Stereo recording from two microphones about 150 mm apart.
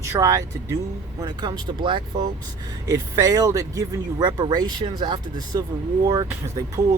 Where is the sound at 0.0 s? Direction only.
20° right (ahead or behind).